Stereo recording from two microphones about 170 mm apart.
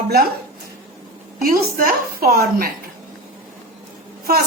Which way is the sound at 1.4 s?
55° right (ahead or behind).